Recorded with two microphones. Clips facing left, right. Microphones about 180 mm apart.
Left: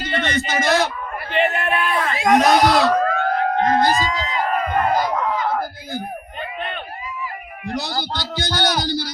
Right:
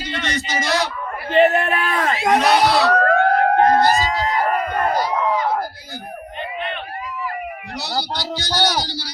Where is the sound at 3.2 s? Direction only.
55° right (ahead or behind).